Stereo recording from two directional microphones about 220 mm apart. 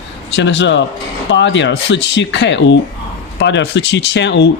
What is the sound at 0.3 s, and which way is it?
A man's voice, 55° left (ahead or behind).